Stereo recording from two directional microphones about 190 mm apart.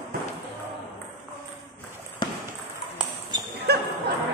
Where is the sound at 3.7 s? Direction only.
55° right (ahead or behind).